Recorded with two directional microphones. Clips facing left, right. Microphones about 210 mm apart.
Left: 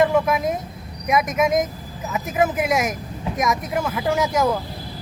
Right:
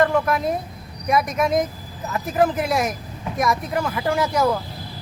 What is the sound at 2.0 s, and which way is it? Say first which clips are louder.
Speech: right 1 dB; 5° left (ahead or behind).